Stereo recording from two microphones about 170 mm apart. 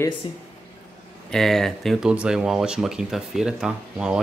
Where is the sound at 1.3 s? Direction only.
Centre (ahead or behind).